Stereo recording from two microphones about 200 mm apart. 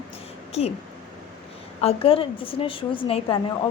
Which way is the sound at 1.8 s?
30° left (ahead or behind).